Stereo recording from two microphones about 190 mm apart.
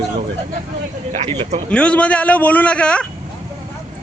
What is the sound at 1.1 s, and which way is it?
Speech, 30° right (ahead or behind).